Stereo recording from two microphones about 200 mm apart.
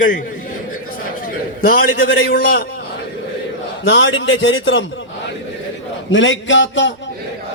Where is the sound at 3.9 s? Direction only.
65° left (ahead or behind).